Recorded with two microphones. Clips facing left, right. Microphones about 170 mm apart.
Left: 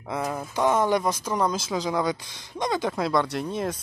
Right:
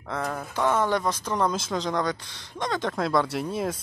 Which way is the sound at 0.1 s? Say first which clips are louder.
Left 1 dB; 10° left (ahead or behind).